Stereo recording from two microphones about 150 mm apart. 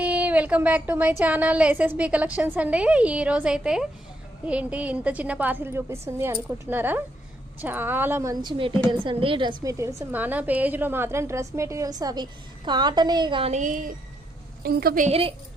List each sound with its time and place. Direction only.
0.0 s a woman's voice: 10° right (ahead or behind)
8.4 s a woman's voice: 35° right (ahead or behind)
9.7 s a woman's voice: 20° right (ahead or behind)
13.5 s speech: 60° right (ahead or behind)
14.6 s a woman's voice: 90° right
15.0 s a woman's voice: 40° right (ahead or behind)